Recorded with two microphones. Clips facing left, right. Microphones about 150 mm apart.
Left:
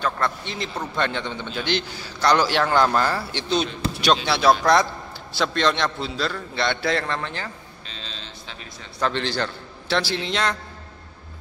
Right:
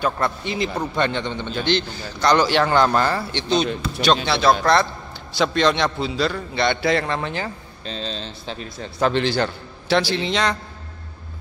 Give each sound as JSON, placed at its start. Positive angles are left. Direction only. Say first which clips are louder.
{"t": 0.0, "sound": "a man's voice", "louder": "right 3 dB", "side_deg": -5}
{"t": 5.4, "sound": "a man's voice", "louder": "right 3 dB", "side_deg": 0}
{"t": 7.8, "sound": "speech", "louder": "right 12 dB", "side_deg": -35}
{"t": 9.0, "sound": "a man's voice", "louder": "right 5 dB", "side_deg": -10}